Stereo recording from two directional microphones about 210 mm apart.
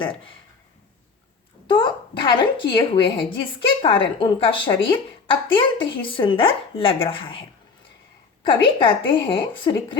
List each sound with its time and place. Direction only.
0.0 s a woman's voice: 25° left (ahead or behind)
1.6 s a woman's voice: 20° left (ahead or behind)
8.6 s a woman's voice: 25° left (ahead or behind)